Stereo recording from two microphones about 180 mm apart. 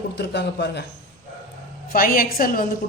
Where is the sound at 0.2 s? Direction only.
70° left (ahead or behind).